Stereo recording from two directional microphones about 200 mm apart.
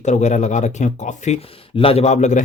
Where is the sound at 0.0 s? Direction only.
35° left (ahead or behind).